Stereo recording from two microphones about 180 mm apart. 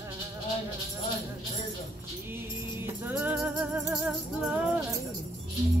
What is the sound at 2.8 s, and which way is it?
Music, 10° right (ahead or behind).